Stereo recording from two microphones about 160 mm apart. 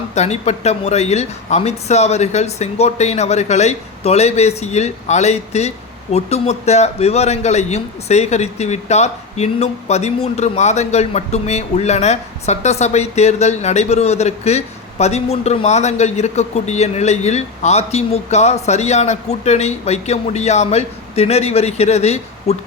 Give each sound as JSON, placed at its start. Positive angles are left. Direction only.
{"t": 0.1, "sound": "a man's voice", "side_deg": 45}